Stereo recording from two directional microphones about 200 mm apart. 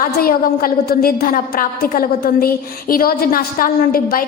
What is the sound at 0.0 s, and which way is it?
A woman's voice, 45° left (ahead or behind).